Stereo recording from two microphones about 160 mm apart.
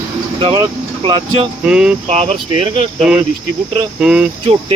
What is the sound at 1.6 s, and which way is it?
Speech, 5° right (ahead or behind).